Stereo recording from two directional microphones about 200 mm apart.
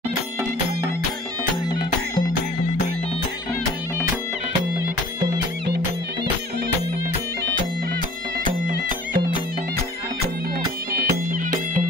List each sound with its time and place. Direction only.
10.9 s music: 45° right (ahead or behind)